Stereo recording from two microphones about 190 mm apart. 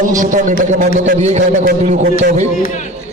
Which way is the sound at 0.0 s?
45° right (ahead or behind).